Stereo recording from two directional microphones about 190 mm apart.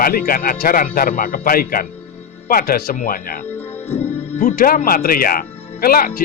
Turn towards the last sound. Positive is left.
turn(degrees=50)  # may be behind; listen again after turning